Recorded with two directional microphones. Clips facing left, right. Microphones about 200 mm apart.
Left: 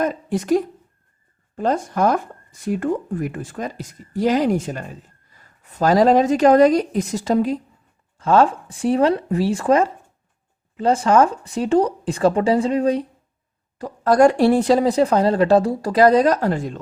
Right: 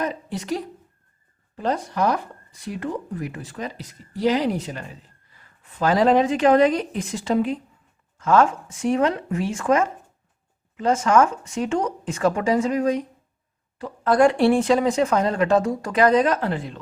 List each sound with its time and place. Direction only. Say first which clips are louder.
0.0 s a woman's voice: left 6 dB; 50° left (ahead or behind); by 13.1 s 30° left (ahead or behind)
13.7 s speech: left 3 dB; 40° left (ahead or behind)